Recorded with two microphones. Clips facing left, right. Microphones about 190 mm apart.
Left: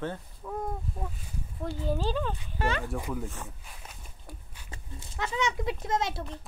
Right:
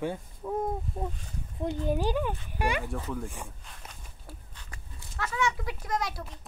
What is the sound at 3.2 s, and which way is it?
Speech, 15° right (ahead or behind).